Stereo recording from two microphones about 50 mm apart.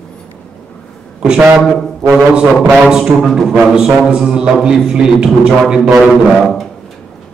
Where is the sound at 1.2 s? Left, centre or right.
Right.